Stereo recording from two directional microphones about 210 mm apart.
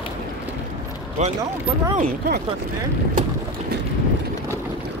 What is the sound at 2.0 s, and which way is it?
Speech, 45° right (ahead or behind).